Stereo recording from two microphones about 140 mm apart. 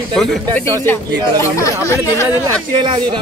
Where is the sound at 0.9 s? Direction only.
15° left (ahead or behind).